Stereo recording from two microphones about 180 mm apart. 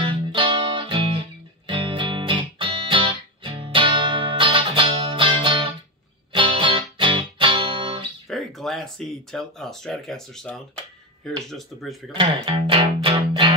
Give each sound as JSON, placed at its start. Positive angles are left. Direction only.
{"t": 0.0, "sound": "music", "side_deg": -30}
{"t": 8.3, "sound": "speech", "side_deg": 0}
{"t": 12.1, "sound": "speech", "side_deg": -30}